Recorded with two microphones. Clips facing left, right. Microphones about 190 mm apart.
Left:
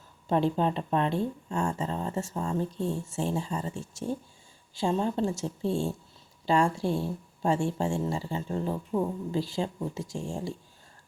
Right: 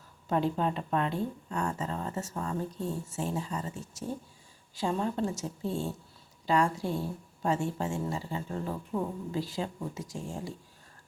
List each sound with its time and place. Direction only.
0.3 s speech: 30° left (ahead or behind)
8.9 s speech: 15° left (ahead or behind)
9.3 s speech: 25° left (ahead or behind)